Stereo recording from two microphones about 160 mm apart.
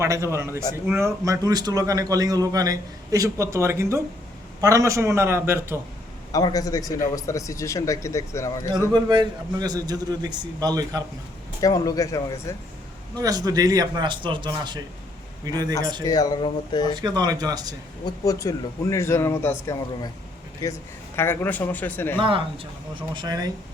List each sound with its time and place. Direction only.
0.0 s a man's voice: 15° right (ahead or behind)
6.3 s speech: 25° left (ahead or behind)
8.9 s a man's voice: 25° right (ahead or behind)
11.6 s speech: 20° left (ahead or behind)
13.1 s a man's voice: 20° right (ahead or behind)
16.0 s speech: 25° left (ahead or behind)
16.9 s a man's voice: 25° right (ahead or behind)
18.0 s speech: 20° left (ahead or behind)
21.2 s speech: 15° left (ahead or behind)
22.2 s a man's voice: 35° right (ahead or behind)